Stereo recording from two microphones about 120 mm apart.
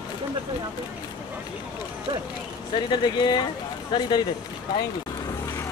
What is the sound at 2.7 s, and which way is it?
Speech, 40° left (ahead or behind).